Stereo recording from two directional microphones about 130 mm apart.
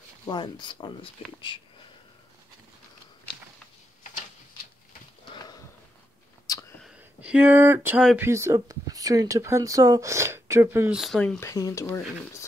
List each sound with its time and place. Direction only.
0.3 s speech: 35° left (ahead or behind)
5.3 s sniff: 30° left (ahead or behind)
6.5 s a sound: 30° left (ahead or behind)
6.8 s a sound: 5° right (ahead or behind)
8.2 s speech: 20° right (ahead or behind)
10.9 s speech: centre (ahead or behind)
11.3 s speech: 25° left (ahead or behind)